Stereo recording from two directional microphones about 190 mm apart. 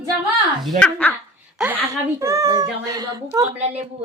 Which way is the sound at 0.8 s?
10° left (ahead or behind).